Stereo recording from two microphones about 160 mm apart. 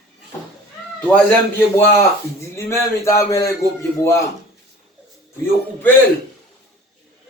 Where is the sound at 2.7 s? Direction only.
20° left (ahead or behind).